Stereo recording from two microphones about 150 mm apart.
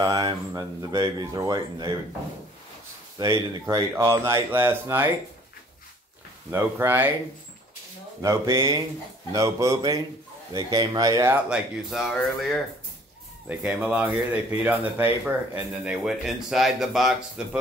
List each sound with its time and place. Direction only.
0.0 s speech: 25° right (ahead or behind)
3.6 s speech: 15° right (ahead or behind)
6.5 s speech: 15° right (ahead or behind)
8.2 s speech: 20° right (ahead or behind)
11.4 s speech: 5° right (ahead or behind)
13.5 s speech: 10° right (ahead or behind)